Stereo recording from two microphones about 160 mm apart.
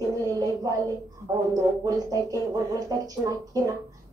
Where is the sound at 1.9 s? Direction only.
20° right (ahead or behind).